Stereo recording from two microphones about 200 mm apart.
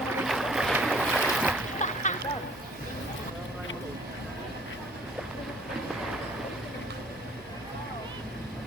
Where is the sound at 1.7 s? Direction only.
35° left (ahead or behind).